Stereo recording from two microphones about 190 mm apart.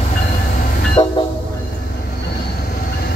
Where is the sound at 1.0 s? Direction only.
25° left (ahead or behind).